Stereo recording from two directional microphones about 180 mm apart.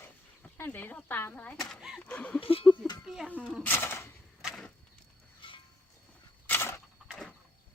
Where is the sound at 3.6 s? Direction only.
15° left (ahead or behind).